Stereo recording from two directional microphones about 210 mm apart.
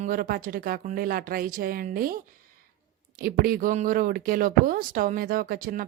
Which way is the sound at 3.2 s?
45° right (ahead or behind).